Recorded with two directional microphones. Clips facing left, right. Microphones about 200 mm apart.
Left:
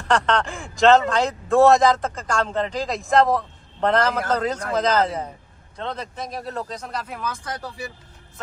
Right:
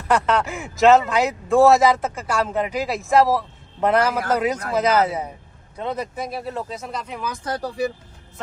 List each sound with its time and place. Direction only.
0.1 s a man's voice: 5° right (ahead or behind)
7.4 s speech: 35° right (ahead or behind)